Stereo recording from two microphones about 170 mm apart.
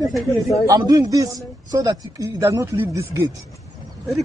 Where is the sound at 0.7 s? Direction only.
20° right (ahead or behind).